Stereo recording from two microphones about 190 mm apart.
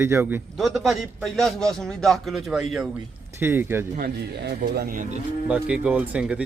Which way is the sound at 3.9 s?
55° right (ahead or behind).